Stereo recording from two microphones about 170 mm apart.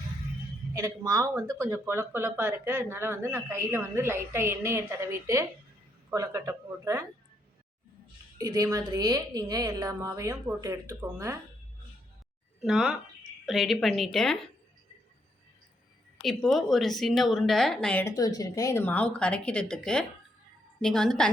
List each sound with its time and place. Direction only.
0.7 s a woman's voice: 20° right (ahead or behind)
8.4 s a woman's voice: 20° right (ahead or behind)
12.6 s speech: 5° right (ahead or behind)
16.2 s speech: centre (ahead or behind)
18.2 s speech: 20° left (ahead or behind); by 21.2 s 5° left (ahead or behind)